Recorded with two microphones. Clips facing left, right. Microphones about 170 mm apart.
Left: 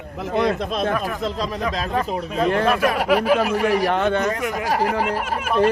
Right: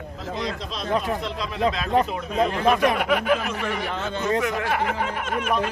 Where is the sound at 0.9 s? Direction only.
20° right (ahead or behind).